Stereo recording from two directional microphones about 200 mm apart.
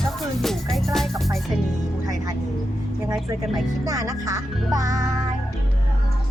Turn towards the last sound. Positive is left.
turn(degrees=-20)  # may be behind; listen again after turning